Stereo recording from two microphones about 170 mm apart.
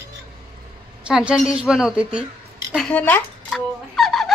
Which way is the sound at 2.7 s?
5° left (ahead or behind).